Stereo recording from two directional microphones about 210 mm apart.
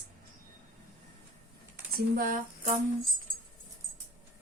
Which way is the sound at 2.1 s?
40° right (ahead or behind).